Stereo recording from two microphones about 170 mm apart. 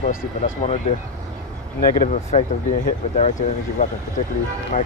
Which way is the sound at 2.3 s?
45° left (ahead or behind).